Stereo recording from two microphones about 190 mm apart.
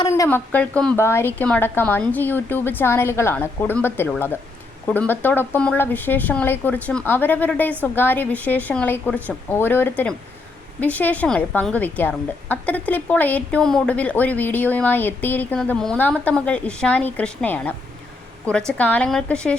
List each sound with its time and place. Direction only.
0.0 s a woman's voice: 15° left (ahead or behind)
18.8 s speech: 5° left (ahead or behind)